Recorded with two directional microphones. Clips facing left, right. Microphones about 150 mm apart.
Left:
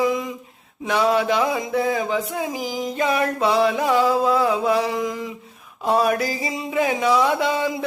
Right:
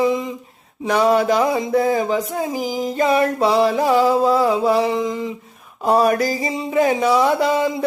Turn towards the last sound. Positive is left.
turn(degrees=-40)  # may be behind; listen again after turning